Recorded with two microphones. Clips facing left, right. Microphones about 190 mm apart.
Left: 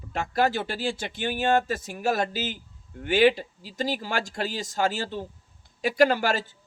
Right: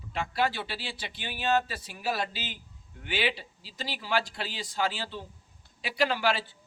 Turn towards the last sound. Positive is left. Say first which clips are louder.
# left 6 dB
turn(degrees=45)  # may be behind; listen again after turning